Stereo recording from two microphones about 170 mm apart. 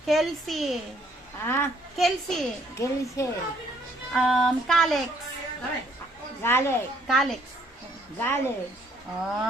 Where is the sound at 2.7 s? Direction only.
15° left (ahead or behind).